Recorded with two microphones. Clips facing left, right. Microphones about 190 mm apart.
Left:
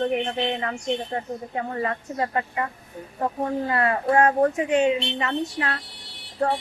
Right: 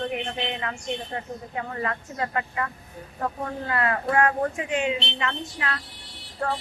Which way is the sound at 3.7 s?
30° left (ahead or behind).